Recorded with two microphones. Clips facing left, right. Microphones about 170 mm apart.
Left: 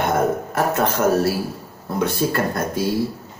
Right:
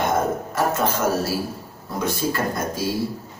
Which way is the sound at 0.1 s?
60° left (ahead or behind).